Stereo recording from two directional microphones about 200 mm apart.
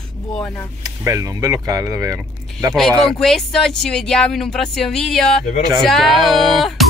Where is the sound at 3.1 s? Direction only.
Centre (ahead or behind).